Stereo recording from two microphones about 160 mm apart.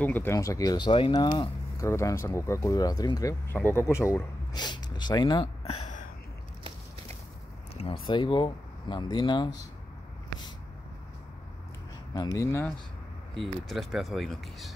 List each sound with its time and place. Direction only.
0.0 s speech: 10° left (ahead or behind); by 5.9 s 40° left (ahead or behind)
7.7 s speech: 35° left (ahead or behind)
12.1 s speech: 25° left (ahead or behind)
13.3 s speech: centre (ahead or behind)